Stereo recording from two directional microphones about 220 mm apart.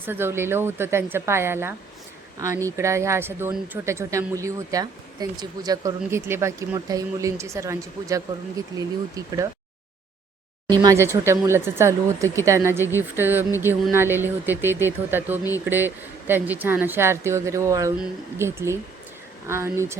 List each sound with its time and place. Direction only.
0.0 s speech: 10° right (ahead or behind)
10.7 s speech: 15° right (ahead or behind)